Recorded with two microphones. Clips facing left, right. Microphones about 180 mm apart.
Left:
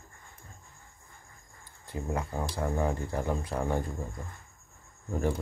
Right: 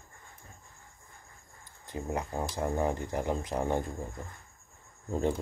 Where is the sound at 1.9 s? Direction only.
15° right (ahead or behind).